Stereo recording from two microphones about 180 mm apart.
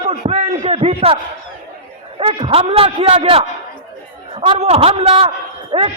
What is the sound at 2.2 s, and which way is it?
Speech, 30° right (ahead or behind).